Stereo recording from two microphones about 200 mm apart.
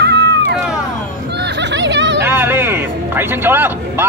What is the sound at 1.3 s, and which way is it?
Music, 60° right (ahead or behind).